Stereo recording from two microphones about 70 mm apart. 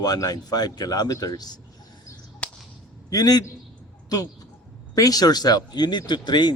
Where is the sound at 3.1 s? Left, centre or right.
Left.